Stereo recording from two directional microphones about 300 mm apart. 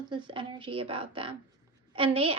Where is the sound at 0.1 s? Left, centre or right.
Centre.